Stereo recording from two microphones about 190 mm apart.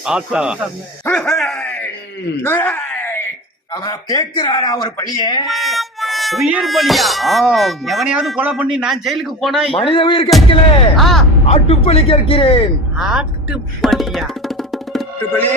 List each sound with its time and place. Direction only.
0.0 s speech: 5° right (ahead or behind)
1.0 s groan: 5° left (ahead or behind)
3.7 s speech: 20° left (ahead or behind)
5.5 s speech: centre (ahead or behind)
9.7 s speech: 25° left (ahead or behind)
10.9 s speech: centre (ahead or behind)
11.4 s speech: 30° left (ahead or behind)
13.0 s music: 5° right (ahead or behind)